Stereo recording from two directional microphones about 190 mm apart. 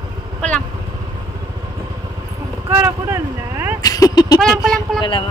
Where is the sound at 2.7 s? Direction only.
10° right (ahead or behind).